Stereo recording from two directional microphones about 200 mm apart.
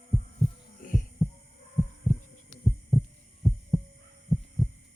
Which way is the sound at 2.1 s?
Centre (ahead or behind).